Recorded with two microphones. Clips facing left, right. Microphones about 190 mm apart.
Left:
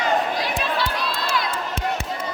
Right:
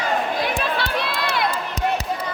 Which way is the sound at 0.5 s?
60° right (ahead or behind).